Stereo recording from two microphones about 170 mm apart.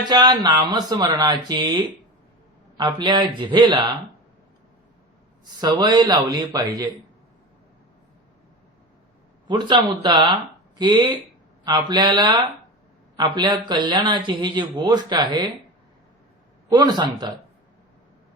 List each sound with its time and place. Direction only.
0.0 s a man's voice: 25° right (ahead or behind)
5.5 s a man's voice: 25° right (ahead or behind)
9.5 s a man's voice: 25° right (ahead or behind)
16.6 s a man's voice: 25° right (ahead or behind)